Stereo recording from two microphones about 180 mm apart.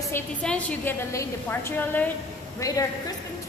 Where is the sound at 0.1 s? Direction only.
5° left (ahead or behind).